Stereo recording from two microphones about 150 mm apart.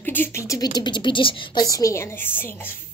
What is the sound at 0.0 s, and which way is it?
A woman's voice, 15° left (ahead or behind).